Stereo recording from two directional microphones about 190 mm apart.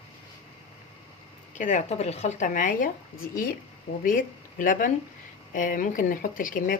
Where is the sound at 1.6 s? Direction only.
40° left (ahead or behind).